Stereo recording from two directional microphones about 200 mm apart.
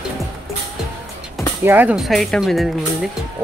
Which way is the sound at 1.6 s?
10° right (ahead or behind).